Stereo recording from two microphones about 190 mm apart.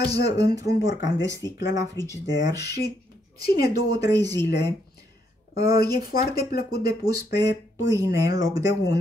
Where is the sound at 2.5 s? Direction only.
60° left (ahead or behind).